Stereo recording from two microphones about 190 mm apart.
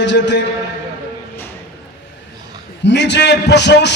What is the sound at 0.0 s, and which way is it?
Speech, 70° left (ahead or behind).